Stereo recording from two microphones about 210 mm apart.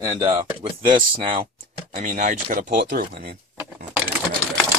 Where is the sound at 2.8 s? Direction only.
55° right (ahead or behind).